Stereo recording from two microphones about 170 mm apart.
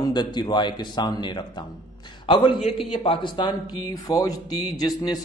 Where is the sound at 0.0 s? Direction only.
25° left (ahead or behind).